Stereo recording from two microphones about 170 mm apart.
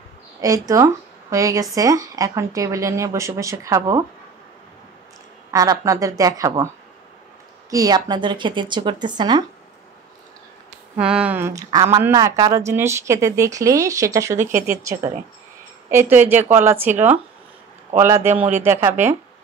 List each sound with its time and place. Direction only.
0.4 s speech: 20° right (ahead or behind)
5.5 s speech: 20° right (ahead or behind)
7.7 s speech: 20° right (ahead or behind)
11.0 s speech: 5° right (ahead or behind)
14.4 s speech: 50° right (ahead or behind)
14.8 s speech: 20° right (ahead or behind)